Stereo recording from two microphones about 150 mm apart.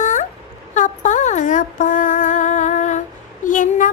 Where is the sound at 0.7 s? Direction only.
55° left (ahead or behind).